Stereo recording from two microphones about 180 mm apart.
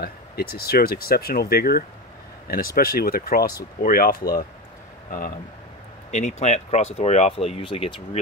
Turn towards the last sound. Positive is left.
turn(degrees=30)  # may be behind; listen again after turning